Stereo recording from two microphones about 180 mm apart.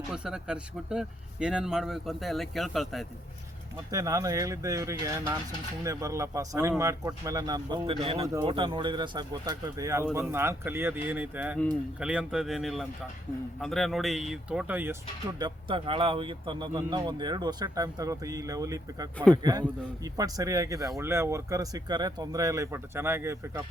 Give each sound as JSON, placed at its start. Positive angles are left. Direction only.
{"t": 0.1, "sound": "speech", "side_deg": -5}
{"t": 3.9, "sound": "speech", "side_deg": -20}
{"t": 15.4, "sound": "speech", "side_deg": -25}